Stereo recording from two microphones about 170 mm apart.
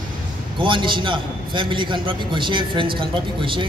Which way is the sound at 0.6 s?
30° right (ahead or behind).